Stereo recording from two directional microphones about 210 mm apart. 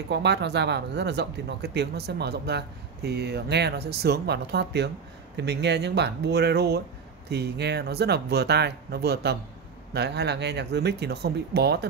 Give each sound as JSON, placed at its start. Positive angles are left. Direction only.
{"t": 0.1, "sound": "speech", "side_deg": -55}